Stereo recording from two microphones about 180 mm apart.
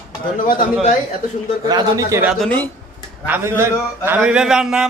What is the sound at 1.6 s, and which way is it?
Speech, 20° right (ahead or behind).